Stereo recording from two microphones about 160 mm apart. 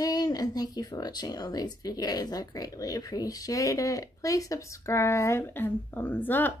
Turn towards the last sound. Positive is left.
turn(degrees=10)  # may be behind; listen again after turning